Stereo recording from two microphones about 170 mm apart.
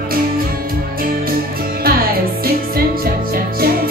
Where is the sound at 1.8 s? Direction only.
60° right (ahead or behind).